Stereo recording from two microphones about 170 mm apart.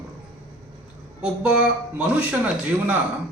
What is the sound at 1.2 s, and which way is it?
Speech, 5° right (ahead or behind).